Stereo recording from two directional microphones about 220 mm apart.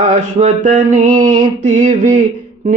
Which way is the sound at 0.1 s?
30° right (ahead or behind).